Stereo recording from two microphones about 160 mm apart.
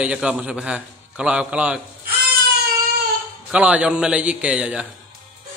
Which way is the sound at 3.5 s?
10° right (ahead or behind).